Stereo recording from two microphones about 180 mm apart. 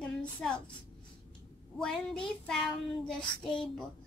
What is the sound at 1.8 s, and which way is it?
A woman's voice, 5° left (ahead or behind).